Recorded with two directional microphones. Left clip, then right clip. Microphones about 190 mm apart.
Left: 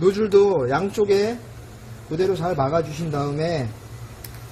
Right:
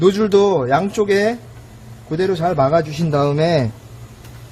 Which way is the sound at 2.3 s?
45° right (ahead or behind).